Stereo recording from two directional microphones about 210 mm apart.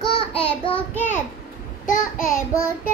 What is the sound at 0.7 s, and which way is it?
Speech, 10° left (ahead or behind).